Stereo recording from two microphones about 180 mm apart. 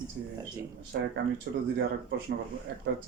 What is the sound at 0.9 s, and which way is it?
Speech, 70° right (ahead or behind).